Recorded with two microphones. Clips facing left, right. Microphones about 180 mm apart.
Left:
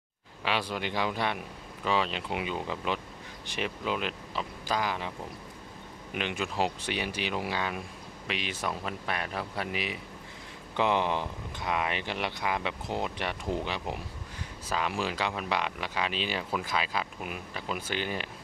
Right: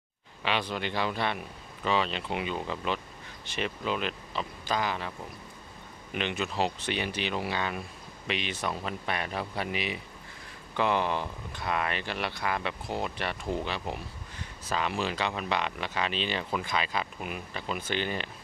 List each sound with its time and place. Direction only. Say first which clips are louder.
0.4 s speech: even; 5° left (ahead or behind)
6.1 s speech: right 1 dB; 10° left (ahead or behind)
10.8 s speech: even; 20° left (ahead or behind)